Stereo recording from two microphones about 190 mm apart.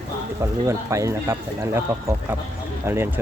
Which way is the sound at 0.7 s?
15° right (ahead or behind).